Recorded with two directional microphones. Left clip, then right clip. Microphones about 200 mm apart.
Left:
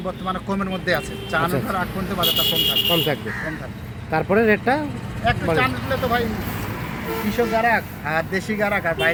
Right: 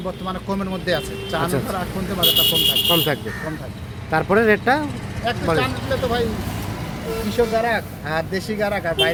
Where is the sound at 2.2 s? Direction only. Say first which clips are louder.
Right 4 dB; 50° right (ahead or behind).